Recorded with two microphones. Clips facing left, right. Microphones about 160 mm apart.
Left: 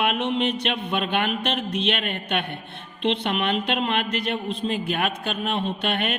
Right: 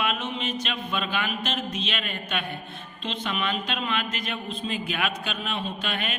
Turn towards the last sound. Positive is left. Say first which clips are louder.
# left 6 dB
turn(degrees=55)  # may be behind; listen again after turning